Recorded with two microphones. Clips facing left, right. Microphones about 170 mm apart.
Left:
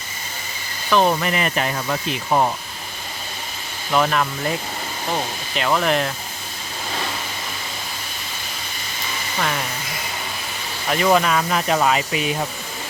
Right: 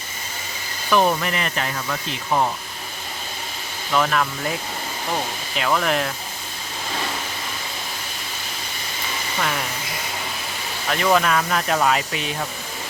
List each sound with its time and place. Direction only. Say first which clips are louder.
0.9 s speech: left 1 dB; centre (ahead or behind)
2.0 s speech: left 2 dB; 25° left (ahead or behind)
3.9 s speech: left 2 dB; 10° left (ahead or behind)
5.5 s speech: left 2 dB; 5° left (ahead or behind)
10.8 s speech: left 2 dB; 5° left (ahead or behind)